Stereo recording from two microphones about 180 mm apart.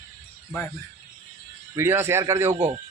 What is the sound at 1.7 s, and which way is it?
Speech, 15° right (ahead or behind).